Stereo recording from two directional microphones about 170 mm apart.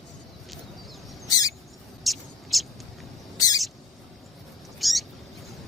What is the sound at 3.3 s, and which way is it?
Bird, 20° left (ahead or behind).